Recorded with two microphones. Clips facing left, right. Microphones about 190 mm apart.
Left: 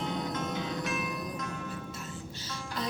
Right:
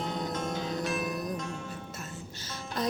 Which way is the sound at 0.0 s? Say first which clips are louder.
Right 1 dB; 40° right (ahead or behind).